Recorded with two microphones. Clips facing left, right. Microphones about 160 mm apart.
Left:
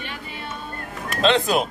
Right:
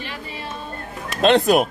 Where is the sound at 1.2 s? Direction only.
55° right (ahead or behind).